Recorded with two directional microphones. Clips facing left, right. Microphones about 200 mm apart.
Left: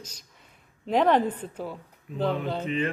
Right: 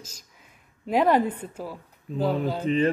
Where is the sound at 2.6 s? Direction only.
35° right (ahead or behind).